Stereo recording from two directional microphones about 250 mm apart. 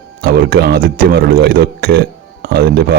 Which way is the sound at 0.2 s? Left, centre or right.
Right.